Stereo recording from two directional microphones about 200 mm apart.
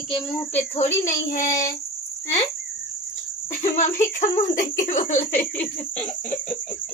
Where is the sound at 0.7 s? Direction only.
35° left (ahead or behind).